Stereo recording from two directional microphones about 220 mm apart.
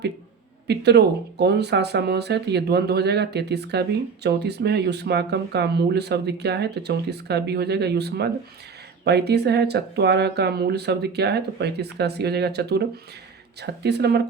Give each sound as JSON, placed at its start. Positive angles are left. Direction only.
{"t": 0.7, "sound": "speech", "side_deg": -50}